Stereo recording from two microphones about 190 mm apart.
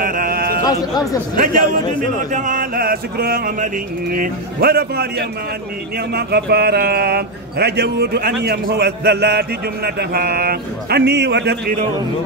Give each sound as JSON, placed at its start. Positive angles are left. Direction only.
{"t": 0.0, "sound": "a sound", "side_deg": -45}
{"t": 1.3, "sound": "mantra", "side_deg": -45}
{"t": 6.1, "sound": "speech", "side_deg": -55}